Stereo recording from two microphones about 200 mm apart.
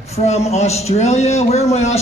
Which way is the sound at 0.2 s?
35° left (ahead or behind).